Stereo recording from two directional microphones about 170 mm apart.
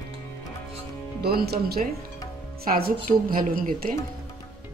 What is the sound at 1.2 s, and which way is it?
Speech, 65° right (ahead or behind).